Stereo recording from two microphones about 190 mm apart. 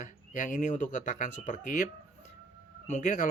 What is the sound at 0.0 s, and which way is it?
Speech, 40° left (ahead or behind).